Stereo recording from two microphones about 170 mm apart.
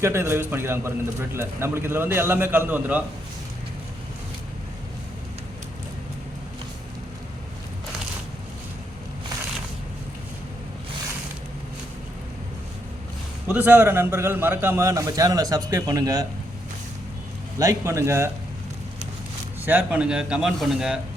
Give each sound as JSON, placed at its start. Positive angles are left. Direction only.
{"t": 0.0, "sound": "a man's voice", "side_deg": -15}
{"t": 13.5, "sound": "a man's voice", "side_deg": -10}
{"t": 17.6, "sound": "a man's voice", "side_deg": -20}
{"t": 19.6, "sound": "a man's voice", "side_deg": -10}